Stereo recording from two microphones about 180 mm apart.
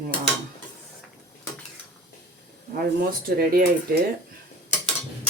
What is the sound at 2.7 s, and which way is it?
Speech, 55° right (ahead or behind).